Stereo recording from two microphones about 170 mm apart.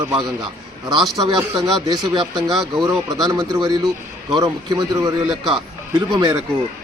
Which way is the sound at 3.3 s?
20° right (ahead or behind).